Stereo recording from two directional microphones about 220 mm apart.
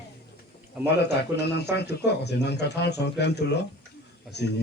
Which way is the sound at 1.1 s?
50° left (ahead or behind).